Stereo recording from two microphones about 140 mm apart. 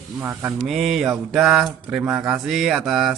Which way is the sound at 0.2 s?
15° right (ahead or behind).